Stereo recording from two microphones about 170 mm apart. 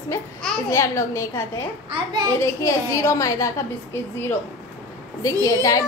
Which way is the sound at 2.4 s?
20° left (ahead or behind).